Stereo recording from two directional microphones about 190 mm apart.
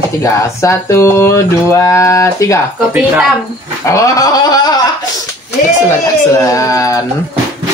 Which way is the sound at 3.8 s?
15° left (ahead or behind).